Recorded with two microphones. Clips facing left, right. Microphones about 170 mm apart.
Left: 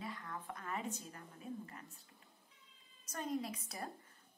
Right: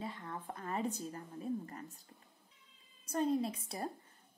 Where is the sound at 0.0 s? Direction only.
25° right (ahead or behind).